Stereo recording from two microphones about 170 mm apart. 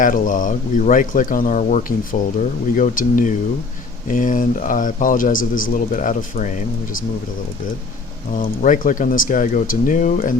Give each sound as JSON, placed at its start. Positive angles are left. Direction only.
{"t": 0.0, "sound": "speech", "side_deg": 50}
{"t": 8.4, "sound": "speech", "side_deg": 50}